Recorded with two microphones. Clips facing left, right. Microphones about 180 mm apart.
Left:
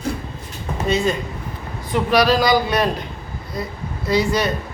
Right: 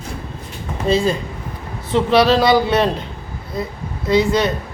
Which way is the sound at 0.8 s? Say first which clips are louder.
Right 3 dB; 30° right (ahead or behind).